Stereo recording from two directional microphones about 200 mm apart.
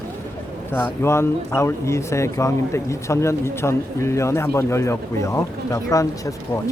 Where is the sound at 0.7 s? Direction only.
10° left (ahead or behind).